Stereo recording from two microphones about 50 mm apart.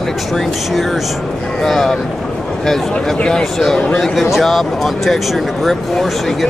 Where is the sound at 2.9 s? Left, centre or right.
Centre.